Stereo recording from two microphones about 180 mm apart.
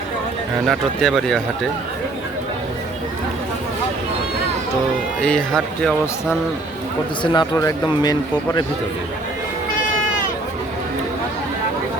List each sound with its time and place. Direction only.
0.7 s speech: centre (ahead or behind)
5.2 s speech: 5° left (ahead or behind)
7.2 s speech: 25° left (ahead or behind)